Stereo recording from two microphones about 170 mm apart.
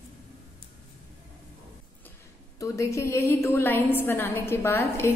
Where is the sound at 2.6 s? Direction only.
20° left (ahead or behind).